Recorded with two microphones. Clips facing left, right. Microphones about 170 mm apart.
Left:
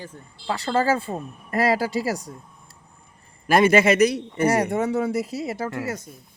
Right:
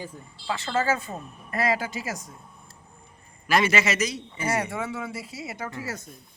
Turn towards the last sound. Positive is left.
turn(degrees=40)  # may be behind; listen again after turning